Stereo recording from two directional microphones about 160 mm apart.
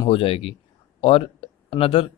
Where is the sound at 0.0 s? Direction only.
35° left (ahead or behind).